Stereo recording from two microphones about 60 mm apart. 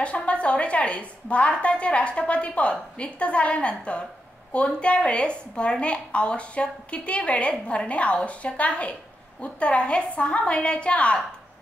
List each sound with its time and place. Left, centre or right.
0.0 s a woman's voice: centre